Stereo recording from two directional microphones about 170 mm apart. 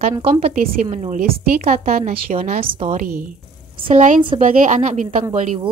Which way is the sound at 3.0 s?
55° right (ahead or behind).